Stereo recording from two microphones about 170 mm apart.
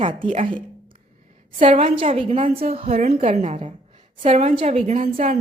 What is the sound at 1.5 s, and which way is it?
A woman's voice, 35° right (ahead or behind).